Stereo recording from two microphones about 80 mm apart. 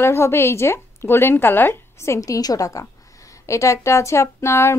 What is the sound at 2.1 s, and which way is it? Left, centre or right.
A woman's voice, left.